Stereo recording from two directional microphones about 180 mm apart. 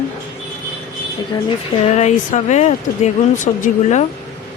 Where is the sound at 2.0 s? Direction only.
40° left (ahead or behind).